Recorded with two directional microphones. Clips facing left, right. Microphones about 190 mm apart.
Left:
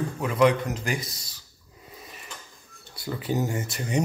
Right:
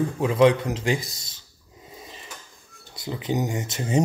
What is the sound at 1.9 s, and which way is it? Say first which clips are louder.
Drawer open or close: right 3 dB; 25° right (ahead or behind).